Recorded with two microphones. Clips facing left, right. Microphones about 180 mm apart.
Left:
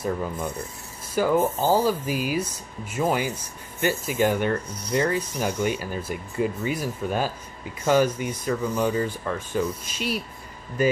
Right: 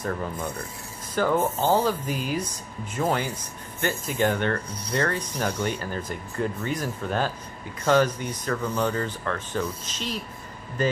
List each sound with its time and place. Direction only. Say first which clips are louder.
1.1 s speech: left 2 dB; 10° left (ahead or behind)